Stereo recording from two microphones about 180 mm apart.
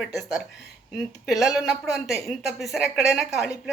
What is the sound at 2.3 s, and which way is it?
Speech, centre (ahead or behind).